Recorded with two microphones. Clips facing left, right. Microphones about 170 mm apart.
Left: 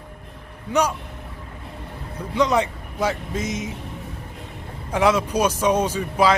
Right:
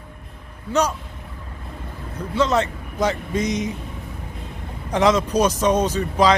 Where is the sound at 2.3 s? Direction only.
15° left (ahead or behind).